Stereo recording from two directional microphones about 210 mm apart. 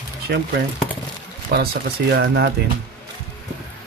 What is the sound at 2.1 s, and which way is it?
Speech, 50° right (ahead or behind).